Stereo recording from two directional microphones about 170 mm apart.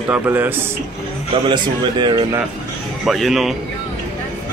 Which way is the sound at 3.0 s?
Centre (ahead or behind).